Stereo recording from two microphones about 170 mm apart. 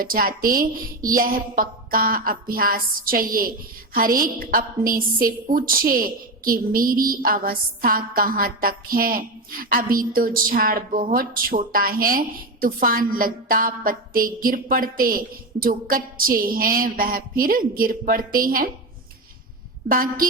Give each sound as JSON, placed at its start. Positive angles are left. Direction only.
{"t": 0.0, "sound": "a woman's voice", "side_deg": -55}
{"t": 19.9, "sound": "a woman's voice", "side_deg": -55}